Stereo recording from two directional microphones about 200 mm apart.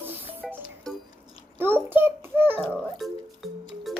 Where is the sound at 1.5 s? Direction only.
10° right (ahead or behind).